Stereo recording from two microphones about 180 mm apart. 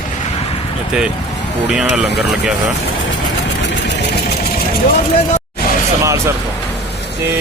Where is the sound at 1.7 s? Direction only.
5° right (ahead or behind).